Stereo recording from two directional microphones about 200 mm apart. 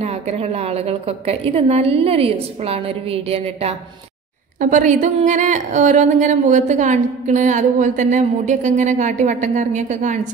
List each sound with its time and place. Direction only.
0.0 s speech: 30° right (ahead or behind)